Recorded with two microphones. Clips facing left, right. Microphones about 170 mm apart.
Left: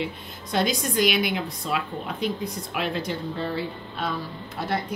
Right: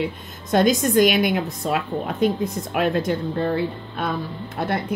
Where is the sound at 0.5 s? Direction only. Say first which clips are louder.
Right 7 dB; 45° right (ahead or behind).